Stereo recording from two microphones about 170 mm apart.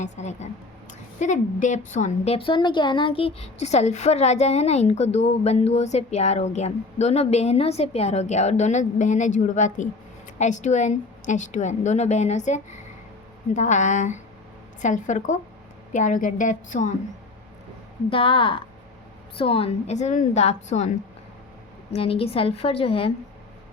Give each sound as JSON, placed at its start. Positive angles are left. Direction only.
{"t": 0.0, "sound": "a woman's voice", "side_deg": 40}
{"t": 18.1, "sound": "a woman's voice", "side_deg": 30}
{"t": 21.9, "sound": "a woman's voice", "side_deg": 35}